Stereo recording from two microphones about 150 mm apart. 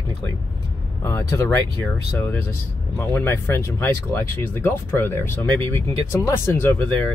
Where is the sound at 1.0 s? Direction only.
15° left (ahead or behind).